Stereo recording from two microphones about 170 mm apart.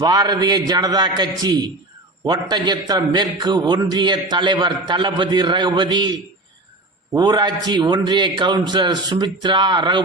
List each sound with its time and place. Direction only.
0.0 s a man's voice: 25° right (ahead or behind)